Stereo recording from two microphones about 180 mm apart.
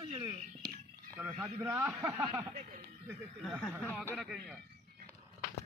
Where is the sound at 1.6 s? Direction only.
15° right (ahead or behind).